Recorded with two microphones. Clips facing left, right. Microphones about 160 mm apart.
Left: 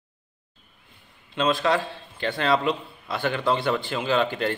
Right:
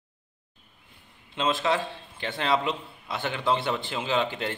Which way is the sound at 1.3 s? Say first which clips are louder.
Left 3 dB; 20° right (ahead or behind).